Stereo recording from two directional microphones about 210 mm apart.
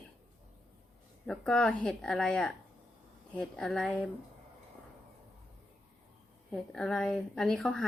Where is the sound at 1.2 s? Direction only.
5° left (ahead or behind).